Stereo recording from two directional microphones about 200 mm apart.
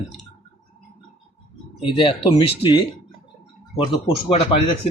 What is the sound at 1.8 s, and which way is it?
A man's voice, 25° left (ahead or behind).